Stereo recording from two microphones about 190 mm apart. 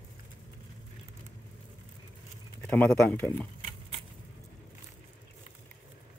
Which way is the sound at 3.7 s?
30° right (ahead or behind).